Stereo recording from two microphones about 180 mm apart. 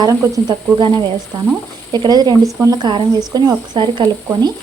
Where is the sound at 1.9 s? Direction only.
25° right (ahead or behind).